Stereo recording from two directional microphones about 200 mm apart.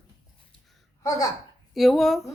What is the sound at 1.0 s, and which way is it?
Speech, 20° left (ahead or behind).